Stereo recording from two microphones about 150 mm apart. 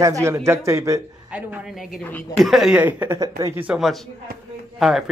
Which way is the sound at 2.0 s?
10° left (ahead or behind).